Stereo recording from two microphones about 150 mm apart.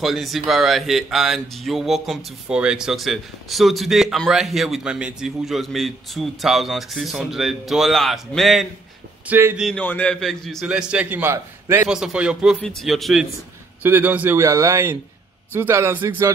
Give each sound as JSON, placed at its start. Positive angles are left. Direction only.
{"t": 0.0, "sound": "speech", "side_deg": 0}
{"t": 9.3, "sound": "a man's voice", "side_deg": -15}
{"t": 9.8, "sound": "speech", "side_deg": 10}
{"t": 11.9, "sound": "speech", "side_deg": -5}
{"t": 13.8, "sound": "a man's voice", "side_deg": -10}